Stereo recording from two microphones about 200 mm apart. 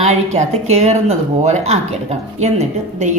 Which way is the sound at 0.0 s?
30° right (ahead or behind).